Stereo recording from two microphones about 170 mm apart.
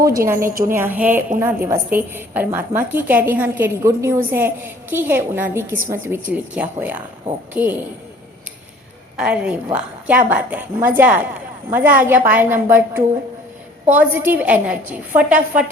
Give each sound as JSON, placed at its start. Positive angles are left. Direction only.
{"t": 0.0, "sound": "a woman's voice", "side_deg": -20}
{"t": 9.1, "sound": "a woman's voice", "side_deg": -5}